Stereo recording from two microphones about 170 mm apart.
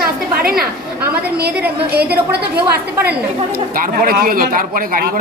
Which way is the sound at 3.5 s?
60° right (ahead or behind).